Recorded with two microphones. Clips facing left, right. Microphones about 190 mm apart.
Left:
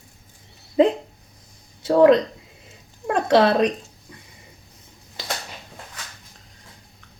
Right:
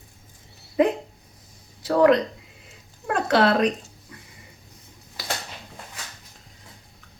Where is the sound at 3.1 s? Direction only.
25° left (ahead or behind).